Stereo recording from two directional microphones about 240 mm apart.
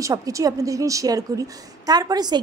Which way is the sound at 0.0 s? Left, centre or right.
Centre.